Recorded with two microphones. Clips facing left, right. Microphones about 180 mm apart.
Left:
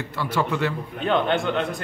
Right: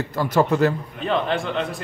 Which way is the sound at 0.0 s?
40° right (ahead or behind).